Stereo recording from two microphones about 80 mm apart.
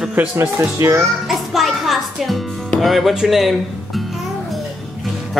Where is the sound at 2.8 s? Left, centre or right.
Centre.